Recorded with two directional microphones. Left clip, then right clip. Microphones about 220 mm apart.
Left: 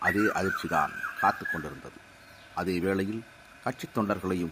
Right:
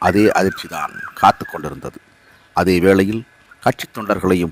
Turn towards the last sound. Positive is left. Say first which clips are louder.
# right 12 dB
turn(degrees=-45)  # may be behind; listen again after turning